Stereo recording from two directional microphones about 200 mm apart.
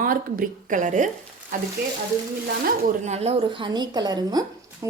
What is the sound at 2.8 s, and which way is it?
A woman's voice, 35° right (ahead or behind).